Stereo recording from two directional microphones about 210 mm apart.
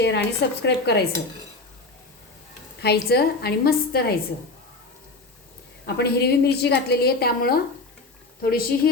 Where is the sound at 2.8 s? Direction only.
50° left (ahead or behind).